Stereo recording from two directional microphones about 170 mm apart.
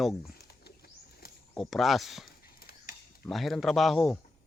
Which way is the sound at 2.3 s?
60° left (ahead or behind).